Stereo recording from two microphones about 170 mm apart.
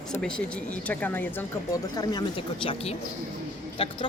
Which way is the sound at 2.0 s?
25° left (ahead or behind).